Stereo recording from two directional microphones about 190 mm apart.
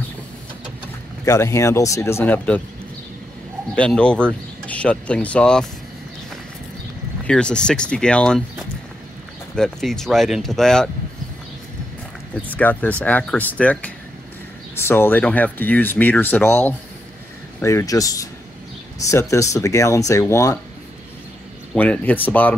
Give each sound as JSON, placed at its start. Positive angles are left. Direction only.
{"t": 1.2, "sound": "speech", "side_deg": 15}
{"t": 3.7, "sound": "speech", "side_deg": 5}
{"t": 7.2, "sound": "speech", "side_deg": 5}
{"t": 12.5, "sound": "speech", "side_deg": 10}
{"t": 21.7, "sound": "speech", "side_deg": 5}